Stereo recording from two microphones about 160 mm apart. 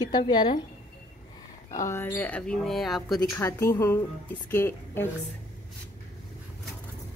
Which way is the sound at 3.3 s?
15° left (ahead or behind).